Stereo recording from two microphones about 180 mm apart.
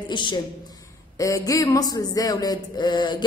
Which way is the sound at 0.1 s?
25° left (ahead or behind).